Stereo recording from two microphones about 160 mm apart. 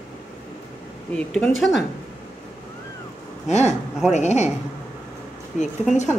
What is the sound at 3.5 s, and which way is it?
Speech, 45° left (ahead or behind).